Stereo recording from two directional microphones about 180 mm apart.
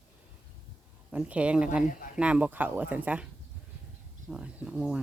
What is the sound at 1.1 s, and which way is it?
Speech, 5° right (ahead or behind).